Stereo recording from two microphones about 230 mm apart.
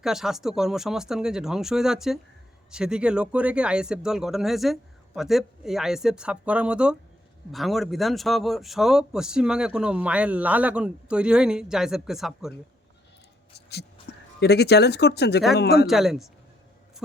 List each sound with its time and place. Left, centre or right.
0.0 s speech: centre
13.5 s a man's voice: left
15.9 s speech: centre